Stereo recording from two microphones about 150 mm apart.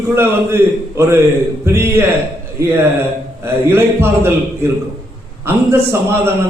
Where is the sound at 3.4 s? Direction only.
15° right (ahead or behind).